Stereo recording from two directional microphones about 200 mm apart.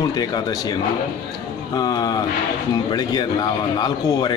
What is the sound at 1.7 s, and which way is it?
A man's voice, 20° left (ahead or behind).